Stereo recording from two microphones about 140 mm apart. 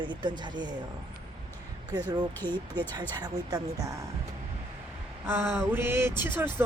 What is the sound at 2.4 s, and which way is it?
A woman's voice, 30° right (ahead or behind).